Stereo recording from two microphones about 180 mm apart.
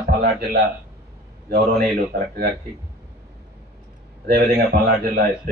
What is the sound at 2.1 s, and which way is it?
Speech, 75° right (ahead or behind).